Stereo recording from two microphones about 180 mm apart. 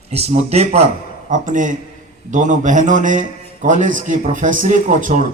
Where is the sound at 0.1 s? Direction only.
35° right (ahead or behind).